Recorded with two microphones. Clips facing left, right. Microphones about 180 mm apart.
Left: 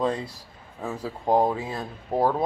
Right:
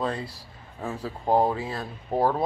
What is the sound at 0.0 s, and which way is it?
Speech, 15° left (ahead or behind).